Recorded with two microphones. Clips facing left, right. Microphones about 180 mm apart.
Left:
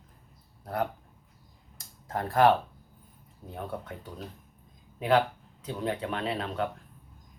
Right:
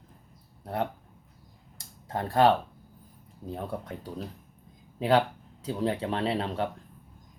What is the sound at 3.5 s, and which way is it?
Speech, 30° right (ahead or behind).